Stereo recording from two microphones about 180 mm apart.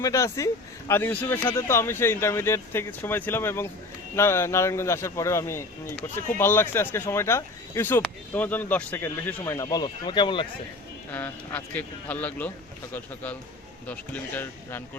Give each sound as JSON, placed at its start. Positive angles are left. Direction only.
{"t": 0.0, "sound": "speech", "side_deg": 15}
{"t": 11.1, "sound": "speech", "side_deg": 10}
{"t": 13.8, "sound": "speech", "side_deg": 10}